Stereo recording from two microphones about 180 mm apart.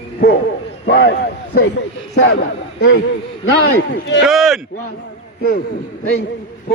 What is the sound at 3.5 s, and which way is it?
Speech, 75° left (ahead or behind).